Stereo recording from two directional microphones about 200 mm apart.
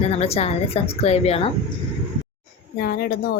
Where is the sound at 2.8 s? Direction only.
50° left (ahead or behind).